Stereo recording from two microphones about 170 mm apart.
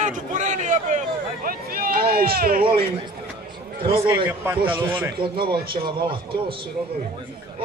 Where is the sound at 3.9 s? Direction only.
15° right (ahead or behind).